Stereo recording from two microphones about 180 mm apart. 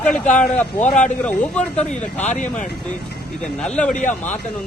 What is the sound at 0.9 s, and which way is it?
Speech, 40° left (ahead or behind).